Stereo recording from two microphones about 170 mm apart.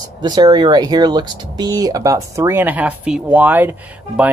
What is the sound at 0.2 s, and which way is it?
Speech, 25° right (ahead or behind).